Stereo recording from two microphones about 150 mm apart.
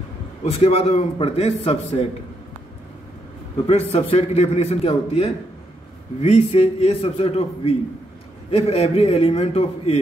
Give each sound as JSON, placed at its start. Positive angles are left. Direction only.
{"t": 0.5, "sound": "a man's voice", "side_deg": 40}
{"t": 3.9, "sound": "a man's voice", "side_deg": 45}